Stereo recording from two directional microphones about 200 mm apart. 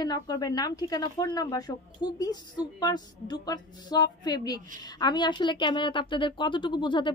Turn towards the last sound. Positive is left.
turn(degrees=25)  # may be behind; listen again after turning